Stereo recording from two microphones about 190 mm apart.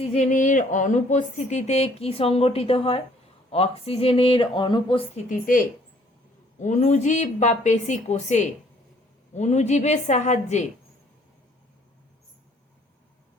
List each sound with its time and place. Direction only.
0.0 s speech: 35° left (ahead or behind)
5.3 s a woman's voice: 45° left (ahead or behind)